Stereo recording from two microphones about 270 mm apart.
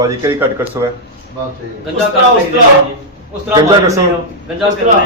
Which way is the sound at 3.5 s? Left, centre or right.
Centre.